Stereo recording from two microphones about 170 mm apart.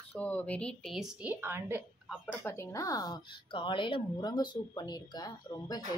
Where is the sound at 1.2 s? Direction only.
10° right (ahead or behind).